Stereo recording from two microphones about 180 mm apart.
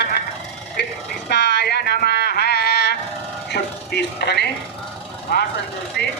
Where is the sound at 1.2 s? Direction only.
70° left (ahead or behind).